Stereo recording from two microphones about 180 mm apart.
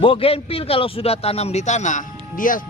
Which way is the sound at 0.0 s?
30° left (ahead or behind).